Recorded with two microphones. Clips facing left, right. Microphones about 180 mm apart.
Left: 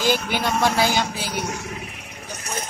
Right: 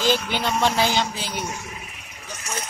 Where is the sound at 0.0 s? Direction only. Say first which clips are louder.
Left 1 dB; 10° left (ahead or behind).